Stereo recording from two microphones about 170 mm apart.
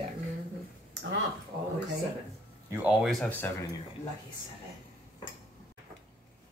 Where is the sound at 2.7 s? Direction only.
10° right (ahead or behind); by 3.5 s 10° left (ahead or behind).